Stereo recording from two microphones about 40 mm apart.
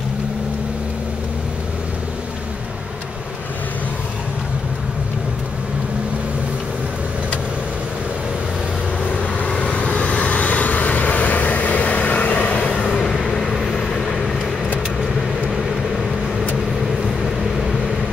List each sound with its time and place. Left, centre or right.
9.6 s vehicle: left
13.1 s vehicle: centre